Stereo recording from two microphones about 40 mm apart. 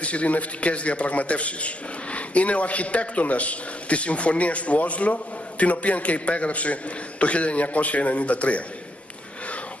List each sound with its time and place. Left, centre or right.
0.0 s a man's voice: left